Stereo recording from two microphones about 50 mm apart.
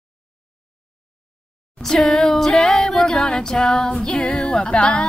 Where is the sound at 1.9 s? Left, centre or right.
Centre.